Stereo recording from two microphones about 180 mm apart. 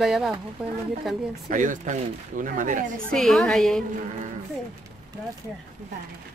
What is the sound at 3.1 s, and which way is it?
Speech, centre (ahead or behind).